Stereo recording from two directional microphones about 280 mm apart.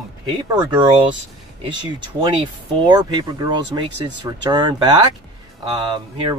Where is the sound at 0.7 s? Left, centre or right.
Centre.